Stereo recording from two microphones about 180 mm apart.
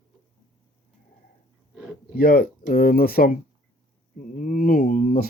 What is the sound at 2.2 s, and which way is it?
Speech, 55° left (ahead or behind).